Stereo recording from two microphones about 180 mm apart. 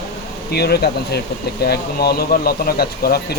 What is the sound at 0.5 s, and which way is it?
Speech, 60° left (ahead or behind).